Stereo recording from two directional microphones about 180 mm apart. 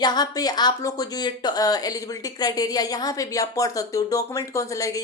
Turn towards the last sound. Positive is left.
turn(degrees=20)  # may be behind; listen again after turning